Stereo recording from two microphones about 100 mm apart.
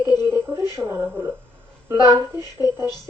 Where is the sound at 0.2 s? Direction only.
25° right (ahead or behind).